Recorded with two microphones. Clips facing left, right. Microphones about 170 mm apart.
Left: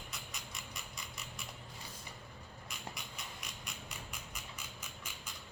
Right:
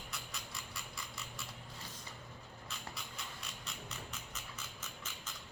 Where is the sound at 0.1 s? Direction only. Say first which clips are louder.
Right 1 dB; 20° left (ahead or behind).